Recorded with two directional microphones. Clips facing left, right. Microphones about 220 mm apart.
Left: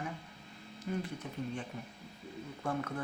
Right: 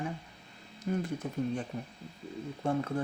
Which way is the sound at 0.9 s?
45° right (ahead or behind).